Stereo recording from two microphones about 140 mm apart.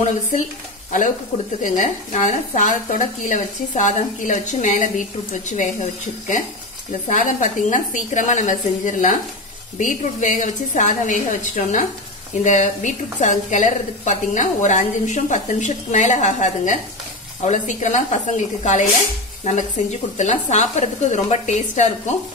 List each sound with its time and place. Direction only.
1.6 s a woman's voice: 60° left (ahead or behind)
7.1 s a woman's voice: 65° left (ahead or behind)
20.2 s a woman's voice: 60° left (ahead or behind)